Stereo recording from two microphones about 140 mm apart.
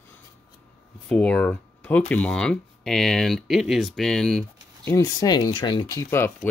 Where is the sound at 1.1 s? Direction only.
10° left (ahead or behind).